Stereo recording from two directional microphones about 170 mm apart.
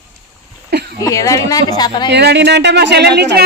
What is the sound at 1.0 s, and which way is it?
A woman's voice, 20° left (ahead or behind).